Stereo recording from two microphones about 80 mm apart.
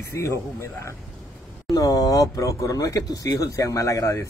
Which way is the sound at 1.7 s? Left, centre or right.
Left.